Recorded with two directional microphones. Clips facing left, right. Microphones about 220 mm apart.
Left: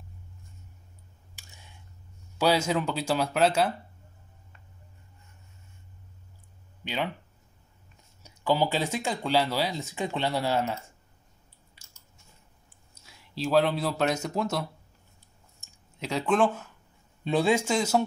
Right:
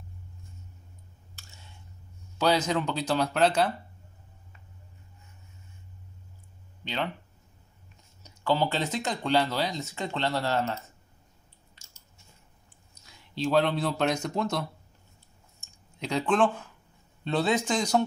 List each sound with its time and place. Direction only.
1.3 s a sound: 15° left (ahead or behind)
2.3 s speech: 10° left (ahead or behind)
6.8 s a sound: 10° left (ahead or behind)
8.2 s speech: 10° left (ahead or behind)
13.0 s speech: 5° left (ahead or behind)
16.0 s speech: 5° left (ahead or behind)